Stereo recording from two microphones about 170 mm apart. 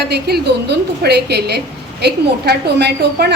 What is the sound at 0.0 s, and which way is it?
Speech, 75° right (ahead or behind).